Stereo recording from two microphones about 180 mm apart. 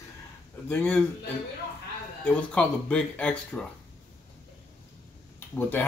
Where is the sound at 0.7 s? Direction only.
5° left (ahead or behind).